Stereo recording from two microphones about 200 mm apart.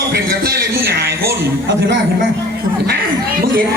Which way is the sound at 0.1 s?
50° right (ahead or behind).